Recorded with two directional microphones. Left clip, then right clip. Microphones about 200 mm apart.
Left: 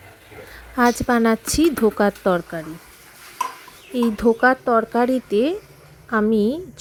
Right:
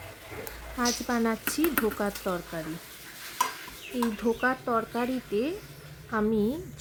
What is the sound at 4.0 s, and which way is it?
A woman's voice, 40° left (ahead or behind).